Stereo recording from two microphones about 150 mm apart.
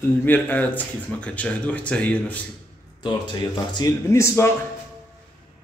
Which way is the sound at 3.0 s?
30° left (ahead or behind).